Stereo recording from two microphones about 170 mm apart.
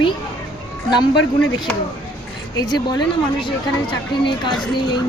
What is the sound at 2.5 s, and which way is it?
Speech, 25° left (ahead or behind).